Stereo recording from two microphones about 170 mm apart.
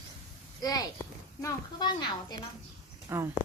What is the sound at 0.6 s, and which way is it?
A child's voice, 20° left (ahead or behind).